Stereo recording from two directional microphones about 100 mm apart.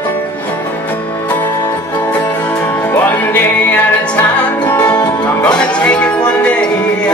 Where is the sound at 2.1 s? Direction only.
15° left (ahead or behind).